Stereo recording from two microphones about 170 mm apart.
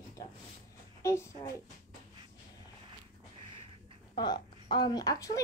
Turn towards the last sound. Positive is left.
turn(degrees=20)  # may be behind; listen again after turning